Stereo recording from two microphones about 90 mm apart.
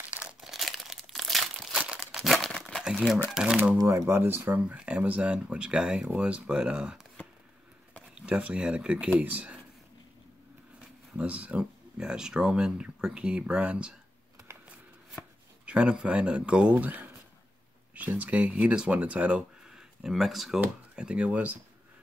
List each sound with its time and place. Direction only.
0.1 s crumpling: 15° right (ahead or behind)
0.4 s crumpling: centre (ahead or behind)
2.3 s crumpling: 5° left (ahead or behind)
2.8 s speech: 5° right (ahead or behind)
3.7 s speech: 30° right (ahead or behind)
4.6 s speech: 15° right (ahead or behind)
8.1 s speech: 15° right (ahead or behind)
10.8 s speech: 15° right (ahead or behind)
14.7 s chopping: 10° right (ahead or behind)
17.9 s speech: 15° right (ahead or behind)
20.0 s speech: centre (ahead or behind)